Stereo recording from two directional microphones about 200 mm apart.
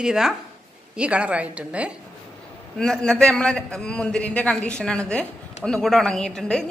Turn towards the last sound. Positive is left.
turn(degrees=5)  # may be behind; listen again after turning